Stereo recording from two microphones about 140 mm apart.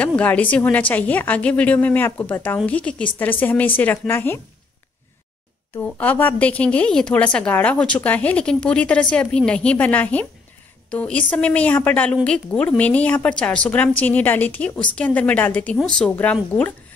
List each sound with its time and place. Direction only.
0.0 s a woman's voice: 10° left (ahead or behind)
5.9 s a woman's voice: 10° left (ahead or behind)